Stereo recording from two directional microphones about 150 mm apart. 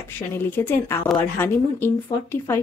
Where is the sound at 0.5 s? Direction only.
15° left (ahead or behind).